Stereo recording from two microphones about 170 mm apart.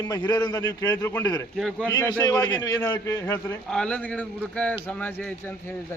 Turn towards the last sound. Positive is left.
turn(degrees=10)  # may be behind; listen again after turning